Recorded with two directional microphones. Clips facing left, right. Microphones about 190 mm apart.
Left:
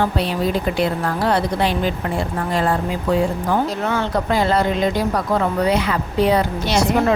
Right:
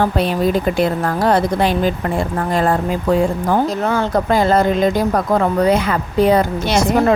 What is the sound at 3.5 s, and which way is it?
Speech, 45° right (ahead or behind).